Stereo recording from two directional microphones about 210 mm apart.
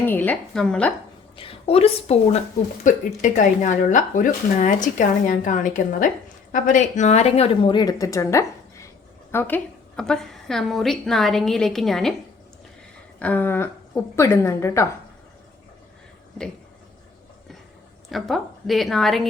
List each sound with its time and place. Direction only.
0.0 s speech: 10° left (ahead or behind)
1.4 s a woman's voice: 25° left (ahead or behind); by 12.1 s centre (ahead or behind)
13.1 s speech: 5° left (ahead or behind)
18.1 s a woman's voice: centre (ahead or behind)